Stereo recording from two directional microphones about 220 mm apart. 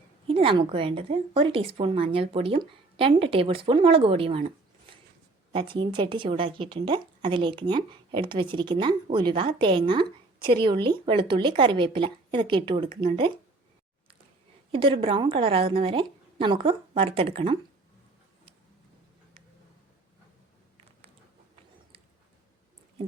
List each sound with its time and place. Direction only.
0.3 s a woman's voice: 25° right (ahead or behind)
14.7 s a woman's voice: 25° right (ahead or behind)